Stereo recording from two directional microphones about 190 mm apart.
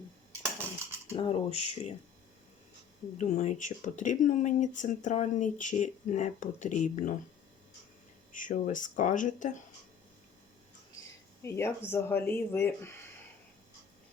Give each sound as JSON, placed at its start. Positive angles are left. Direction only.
{"t": 1.1, "sound": "speech", "side_deg": 30}
{"t": 3.2, "sound": "speech", "side_deg": 40}
{"t": 8.3, "sound": "speech", "side_deg": 45}
{"t": 11.4, "sound": "speech", "side_deg": 15}